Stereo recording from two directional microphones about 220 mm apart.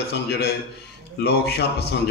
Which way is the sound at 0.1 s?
50° left (ahead or behind).